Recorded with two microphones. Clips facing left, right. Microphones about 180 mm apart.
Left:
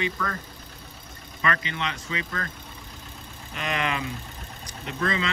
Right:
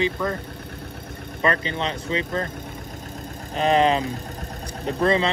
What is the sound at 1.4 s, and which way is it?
Speech, 35° right (ahead or behind).